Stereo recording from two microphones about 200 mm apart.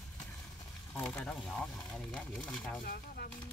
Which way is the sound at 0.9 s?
5° left (ahead or behind).